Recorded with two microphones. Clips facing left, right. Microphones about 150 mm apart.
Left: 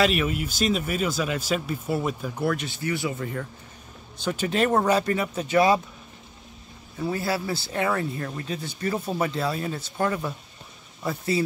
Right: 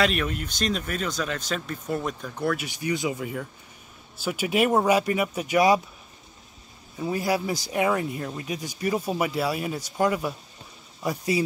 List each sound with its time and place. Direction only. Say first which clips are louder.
0.0 s speech: left 2 dB; 5° left (ahead or behind)
2.5 s speech: even; 15° right (ahead or behind)
7.0 s speech: right 1 dB; 15° right (ahead or behind)